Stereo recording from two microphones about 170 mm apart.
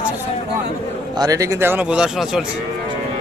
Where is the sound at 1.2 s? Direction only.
20° right (ahead or behind); by 2.4 s centre (ahead or behind).